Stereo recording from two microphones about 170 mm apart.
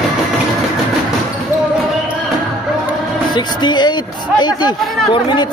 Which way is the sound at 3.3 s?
25° left (ahead or behind).